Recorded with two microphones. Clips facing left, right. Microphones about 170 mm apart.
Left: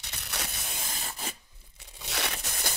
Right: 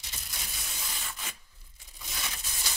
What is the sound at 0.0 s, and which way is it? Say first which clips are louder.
Crushing: left 7 dB; 70° left (ahead or behind).